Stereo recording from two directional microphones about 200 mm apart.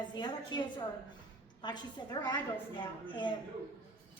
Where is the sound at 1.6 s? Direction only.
20° left (ahead or behind).